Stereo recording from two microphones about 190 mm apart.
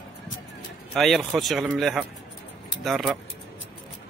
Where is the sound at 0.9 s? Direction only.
Centre (ahead or behind).